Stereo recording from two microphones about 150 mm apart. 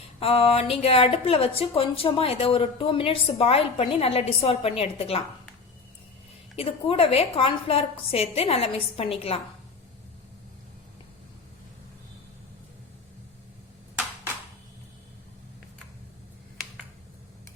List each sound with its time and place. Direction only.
0.2 s a woman's voice: 40° left (ahead or behind)
6.6 s a woman's voice: 40° left (ahead or behind)